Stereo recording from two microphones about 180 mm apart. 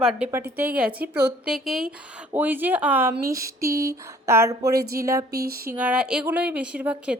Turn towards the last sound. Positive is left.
turn(degrees=-5)  # may be behind; listen again after turning